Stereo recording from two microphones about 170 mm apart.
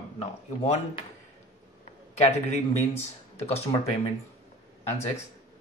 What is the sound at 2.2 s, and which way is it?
Speech, 40° left (ahead or behind).